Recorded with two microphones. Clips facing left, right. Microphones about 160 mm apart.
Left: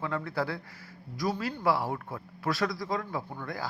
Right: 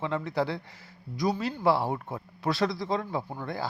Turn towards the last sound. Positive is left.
turn(degrees=-25)  # may be behind; listen again after turning